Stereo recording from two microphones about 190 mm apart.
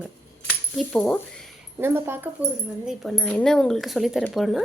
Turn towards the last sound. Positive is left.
turn(degrees=0)  # may be behind; listen again after turning